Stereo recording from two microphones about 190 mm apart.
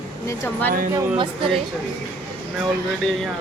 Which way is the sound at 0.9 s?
15° right (ahead or behind).